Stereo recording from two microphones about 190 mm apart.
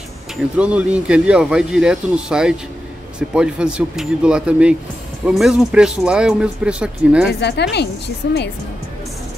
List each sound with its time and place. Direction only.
0.6 s speech: 5° right (ahead or behind)
7.3 s a woman's voice: 65° left (ahead or behind)